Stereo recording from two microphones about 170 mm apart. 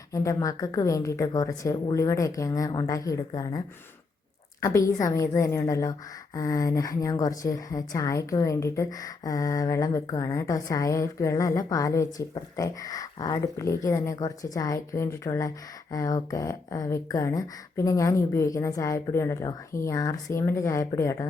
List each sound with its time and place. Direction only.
0.1 s a woman's voice: 20° left (ahead or behind)
4.6 s a woman's voice: 15° left (ahead or behind)